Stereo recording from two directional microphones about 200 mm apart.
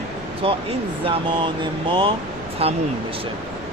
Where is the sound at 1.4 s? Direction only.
25° right (ahead or behind).